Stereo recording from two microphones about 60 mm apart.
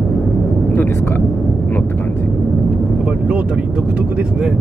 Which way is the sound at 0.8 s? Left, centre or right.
Left.